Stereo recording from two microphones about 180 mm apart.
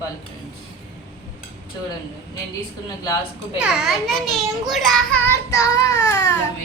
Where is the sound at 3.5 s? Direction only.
5° right (ahead or behind).